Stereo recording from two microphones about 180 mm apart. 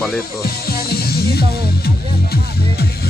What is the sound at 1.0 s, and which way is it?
Music, 60° left (ahead or behind).